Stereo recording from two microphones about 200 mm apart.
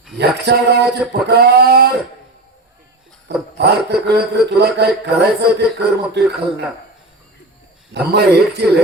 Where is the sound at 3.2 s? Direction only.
60° right (ahead or behind).